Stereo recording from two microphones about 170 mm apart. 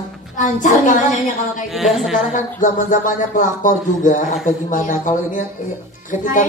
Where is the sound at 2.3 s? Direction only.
50° left (ahead or behind).